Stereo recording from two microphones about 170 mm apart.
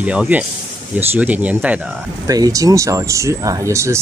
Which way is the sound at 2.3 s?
20° right (ahead or behind).